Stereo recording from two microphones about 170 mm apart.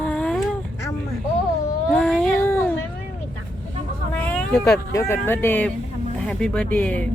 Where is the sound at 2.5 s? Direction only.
15° left (ahead or behind).